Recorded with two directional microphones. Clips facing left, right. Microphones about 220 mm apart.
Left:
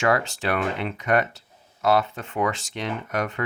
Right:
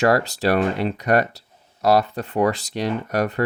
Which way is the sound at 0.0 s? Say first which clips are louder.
Right 5 dB; 35° right (ahead or behind).